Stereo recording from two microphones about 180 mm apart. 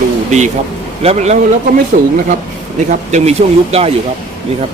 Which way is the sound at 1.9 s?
50° right (ahead or behind).